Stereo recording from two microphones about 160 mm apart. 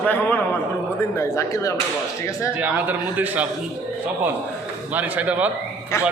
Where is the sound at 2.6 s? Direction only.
10° right (ahead or behind).